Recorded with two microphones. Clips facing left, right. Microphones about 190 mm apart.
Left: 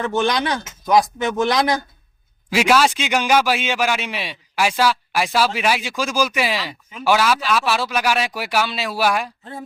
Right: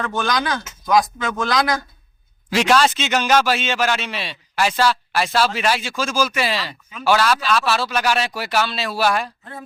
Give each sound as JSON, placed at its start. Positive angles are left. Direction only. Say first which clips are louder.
{"t": 0.0, "sound": "speech", "louder": "left 2 dB", "side_deg": 20}
{"t": 2.5, "sound": "a man's voice", "louder": "even", "side_deg": 10}
{"t": 9.4, "sound": "speech", "louder": "left 3 dB", "side_deg": 25}